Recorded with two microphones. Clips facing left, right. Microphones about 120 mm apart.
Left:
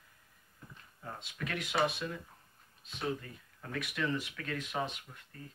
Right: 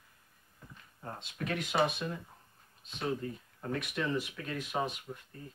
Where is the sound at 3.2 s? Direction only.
30° right (ahead or behind); by 5.2 s 15° right (ahead or behind).